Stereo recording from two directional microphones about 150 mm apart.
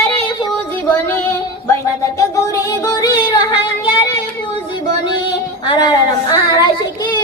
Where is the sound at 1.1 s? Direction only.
15° left (ahead or behind).